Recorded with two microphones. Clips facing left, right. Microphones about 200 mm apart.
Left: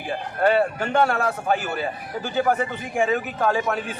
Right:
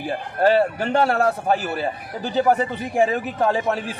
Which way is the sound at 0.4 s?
35° right (ahead or behind).